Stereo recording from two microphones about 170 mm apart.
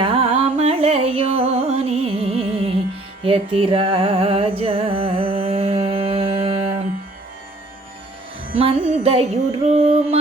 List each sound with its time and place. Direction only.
0.0 s music: 35° right (ahead or behind)
8.5 s music: 35° right (ahead or behind)